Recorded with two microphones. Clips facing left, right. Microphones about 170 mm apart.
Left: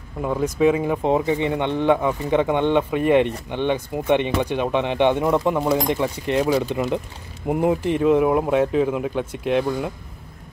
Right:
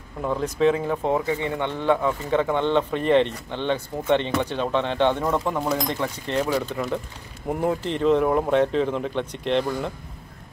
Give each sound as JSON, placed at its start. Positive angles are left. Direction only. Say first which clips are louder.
{"t": 0.2, "sound": "speech", "louder": "left 2 dB", "side_deg": 10}